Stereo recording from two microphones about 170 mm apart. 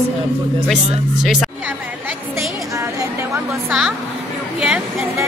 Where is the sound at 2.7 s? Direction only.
20° right (ahead or behind).